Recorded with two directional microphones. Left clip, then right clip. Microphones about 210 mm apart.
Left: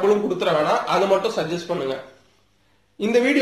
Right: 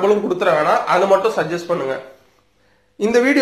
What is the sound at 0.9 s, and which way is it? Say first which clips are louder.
Speech: right 5 dB; centre (ahead or behind).